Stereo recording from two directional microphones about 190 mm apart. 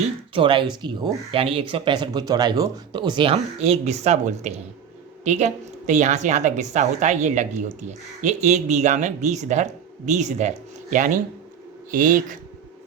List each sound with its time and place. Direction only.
0.3 s a woman's voice: 25° right (ahead or behind); by 12.4 s 45° right (ahead or behind)